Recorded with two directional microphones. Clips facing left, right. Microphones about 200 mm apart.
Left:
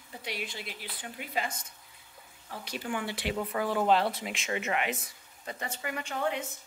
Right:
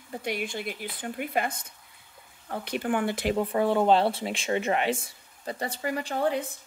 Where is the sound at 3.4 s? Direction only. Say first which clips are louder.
Right 5 dB; 30° right (ahead or behind).